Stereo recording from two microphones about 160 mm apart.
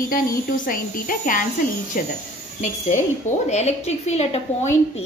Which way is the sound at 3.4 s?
45° left (ahead or behind).